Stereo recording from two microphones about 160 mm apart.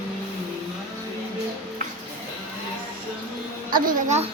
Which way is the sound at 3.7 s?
60° right (ahead or behind).